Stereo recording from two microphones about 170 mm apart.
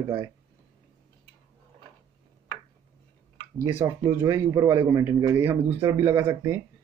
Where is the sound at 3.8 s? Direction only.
20° right (ahead or behind).